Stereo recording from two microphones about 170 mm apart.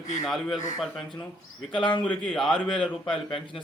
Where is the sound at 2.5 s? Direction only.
30° left (ahead or behind).